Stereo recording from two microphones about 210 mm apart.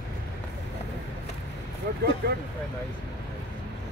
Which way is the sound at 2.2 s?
50° right (ahead or behind).